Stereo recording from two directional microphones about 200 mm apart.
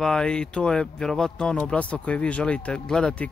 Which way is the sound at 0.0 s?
5° left (ahead or behind).